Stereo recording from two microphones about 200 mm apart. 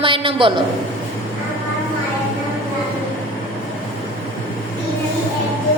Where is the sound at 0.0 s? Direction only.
25° right (ahead or behind).